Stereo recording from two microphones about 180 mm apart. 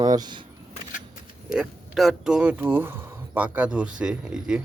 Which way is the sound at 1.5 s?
5° right (ahead or behind).